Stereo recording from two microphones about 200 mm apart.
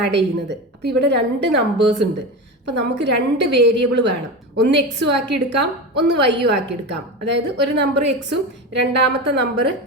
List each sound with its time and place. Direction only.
0.0 s a woman's voice: 60° right (ahead or behind)